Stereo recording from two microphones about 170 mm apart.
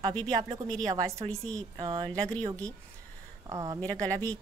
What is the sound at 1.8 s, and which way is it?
Speech, 25° right (ahead or behind).